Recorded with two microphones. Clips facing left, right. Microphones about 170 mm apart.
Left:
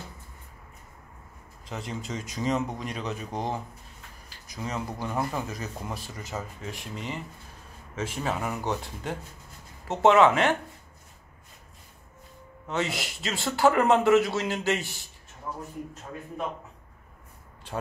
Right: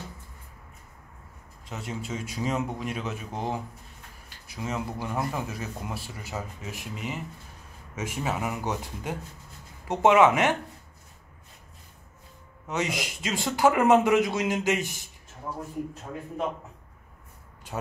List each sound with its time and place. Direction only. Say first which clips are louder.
1.7 s speech: even; 5° right (ahead or behind)
12.6 s speech: even; 15° right (ahead or behind)